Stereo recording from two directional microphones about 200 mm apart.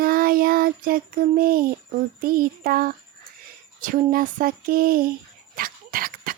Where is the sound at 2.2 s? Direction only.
45° right (ahead or behind).